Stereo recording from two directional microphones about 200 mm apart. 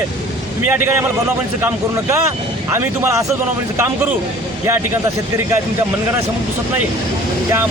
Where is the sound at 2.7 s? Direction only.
15° right (ahead or behind).